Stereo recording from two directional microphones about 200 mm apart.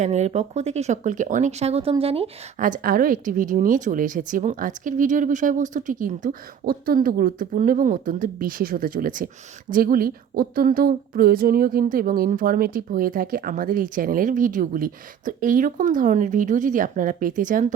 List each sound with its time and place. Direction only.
0.0 s speech: 35° right (ahead or behind)